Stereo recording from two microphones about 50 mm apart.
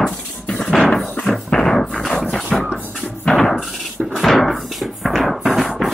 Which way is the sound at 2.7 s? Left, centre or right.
Centre.